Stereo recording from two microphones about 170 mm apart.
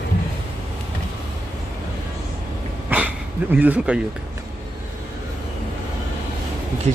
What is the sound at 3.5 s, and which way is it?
Speech, 10° right (ahead or behind).